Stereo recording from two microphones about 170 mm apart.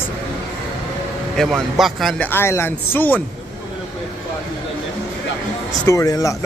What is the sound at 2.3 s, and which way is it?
Speech, 15° left (ahead or behind).